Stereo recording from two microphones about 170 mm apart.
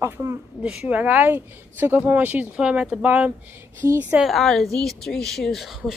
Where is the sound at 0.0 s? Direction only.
15° right (ahead or behind).